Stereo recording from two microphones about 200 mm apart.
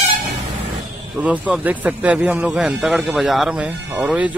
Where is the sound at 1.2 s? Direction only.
5° right (ahead or behind).